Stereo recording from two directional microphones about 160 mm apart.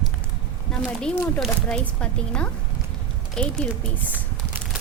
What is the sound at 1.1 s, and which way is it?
Speech, centre (ahead or behind).